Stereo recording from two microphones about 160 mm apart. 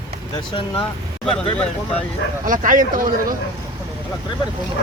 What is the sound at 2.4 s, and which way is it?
Speech, 55° right (ahead or behind).